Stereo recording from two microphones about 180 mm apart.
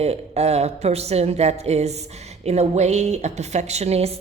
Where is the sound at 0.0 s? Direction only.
35° right (ahead or behind).